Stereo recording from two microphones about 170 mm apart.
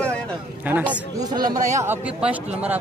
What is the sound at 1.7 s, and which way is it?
Speech, 15° right (ahead or behind).